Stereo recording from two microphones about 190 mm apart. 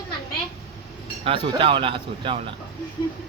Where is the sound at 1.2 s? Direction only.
30° right (ahead or behind).